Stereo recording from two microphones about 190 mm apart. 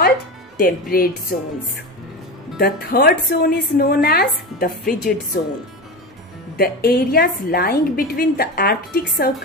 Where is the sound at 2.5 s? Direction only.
55° left (ahead or behind).